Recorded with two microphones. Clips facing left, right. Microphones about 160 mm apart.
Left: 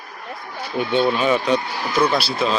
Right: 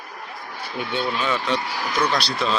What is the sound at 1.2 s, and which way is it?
Speech, 15° left (ahead or behind).